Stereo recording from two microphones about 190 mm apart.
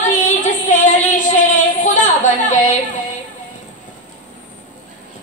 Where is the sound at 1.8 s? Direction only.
40° left (ahead or behind).